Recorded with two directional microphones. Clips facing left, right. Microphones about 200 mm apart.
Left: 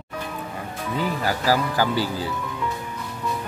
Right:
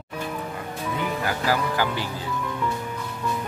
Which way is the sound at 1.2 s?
35° left (ahead or behind).